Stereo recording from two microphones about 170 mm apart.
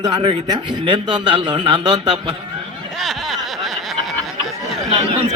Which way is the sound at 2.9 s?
Centre (ahead or behind).